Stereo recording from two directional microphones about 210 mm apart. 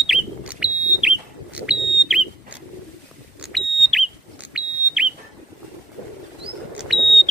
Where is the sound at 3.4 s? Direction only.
Centre (ahead or behind).